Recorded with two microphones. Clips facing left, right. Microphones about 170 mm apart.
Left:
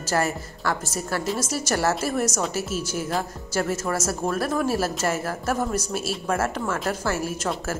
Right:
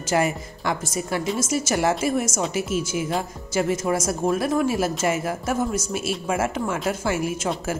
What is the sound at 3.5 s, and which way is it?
Speech, 10° right (ahead or behind).